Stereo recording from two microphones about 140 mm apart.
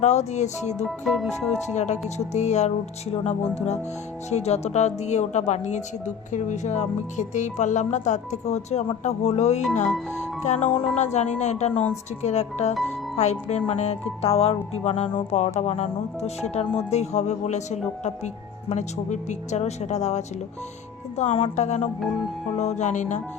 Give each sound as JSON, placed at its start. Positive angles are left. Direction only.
{"t": 0.0, "sound": "speech", "side_deg": 55}
{"t": 0.9, "sound": "speech", "side_deg": 0}
{"t": 1.6, "sound": "speech", "side_deg": 55}